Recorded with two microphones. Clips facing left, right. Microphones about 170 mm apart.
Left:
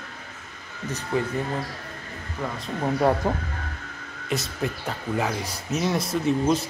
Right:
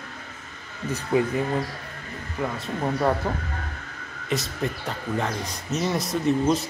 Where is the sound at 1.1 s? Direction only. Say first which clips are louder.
Right 4 dB; 15° right (ahead or behind).